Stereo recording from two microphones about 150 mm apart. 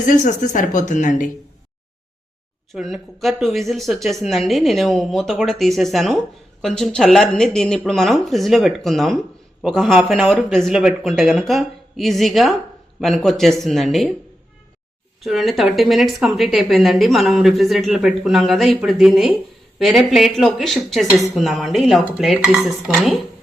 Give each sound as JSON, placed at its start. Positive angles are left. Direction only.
{"t": 0.0, "sound": "speech", "side_deg": 55}
{"t": 2.7, "sound": "speech", "side_deg": 0}
{"t": 15.2, "sound": "speech", "side_deg": 0}